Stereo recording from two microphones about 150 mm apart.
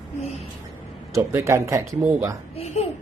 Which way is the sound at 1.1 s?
20° right (ahead or behind).